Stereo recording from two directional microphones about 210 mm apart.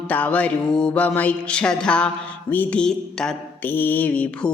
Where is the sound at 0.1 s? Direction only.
5° left (ahead or behind).